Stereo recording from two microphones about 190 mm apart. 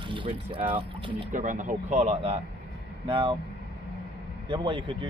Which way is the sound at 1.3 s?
40° right (ahead or behind).